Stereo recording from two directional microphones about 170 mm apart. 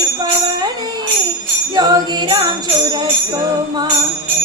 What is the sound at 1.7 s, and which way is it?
Music, 25° right (ahead or behind).